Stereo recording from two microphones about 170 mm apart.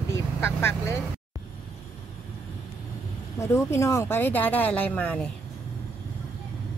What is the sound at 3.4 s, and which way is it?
Speech, 15° left (ahead or behind).